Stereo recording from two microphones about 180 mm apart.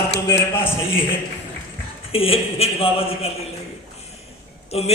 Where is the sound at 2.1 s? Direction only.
30° left (ahead or behind).